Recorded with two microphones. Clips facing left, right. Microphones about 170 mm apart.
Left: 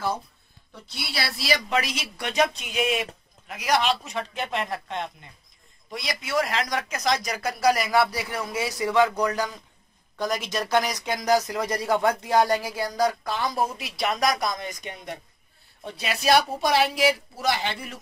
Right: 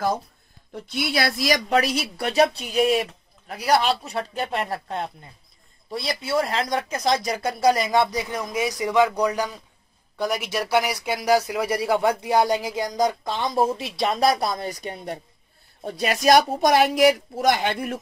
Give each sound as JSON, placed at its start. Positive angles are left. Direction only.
{"t": 0.9, "sound": "speech", "side_deg": -50}